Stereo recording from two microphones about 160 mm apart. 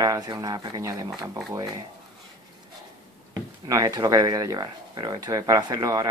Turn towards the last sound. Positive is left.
turn(degrees=-20)  # may be behind; listen again after turning